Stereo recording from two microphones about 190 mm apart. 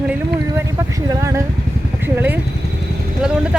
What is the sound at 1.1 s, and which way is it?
Speech, 15° right (ahead or behind).